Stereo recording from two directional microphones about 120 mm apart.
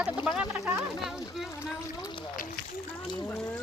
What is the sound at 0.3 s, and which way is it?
Speech, 10° right (ahead or behind).